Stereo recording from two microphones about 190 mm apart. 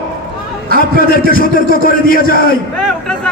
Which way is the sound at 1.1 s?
50° left (ahead or behind).